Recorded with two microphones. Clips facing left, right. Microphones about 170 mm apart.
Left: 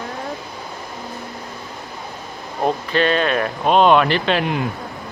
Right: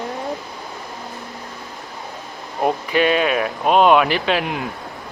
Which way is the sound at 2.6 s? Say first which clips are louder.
Right 1 dB; 10° right (ahead or behind).